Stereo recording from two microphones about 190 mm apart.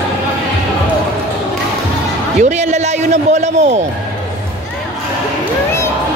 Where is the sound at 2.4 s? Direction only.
40° right (ahead or behind).